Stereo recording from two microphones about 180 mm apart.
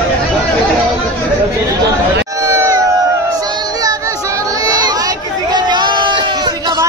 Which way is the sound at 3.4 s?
20° right (ahead or behind).